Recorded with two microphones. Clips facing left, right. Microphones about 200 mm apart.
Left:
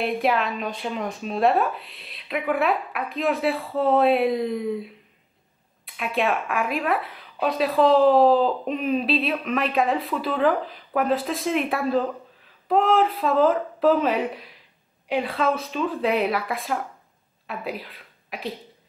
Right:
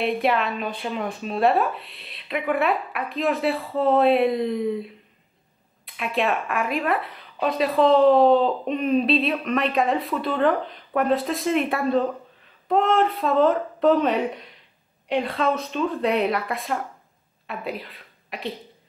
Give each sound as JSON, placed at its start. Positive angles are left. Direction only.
{"t": 0.0, "sound": "speech", "side_deg": 0}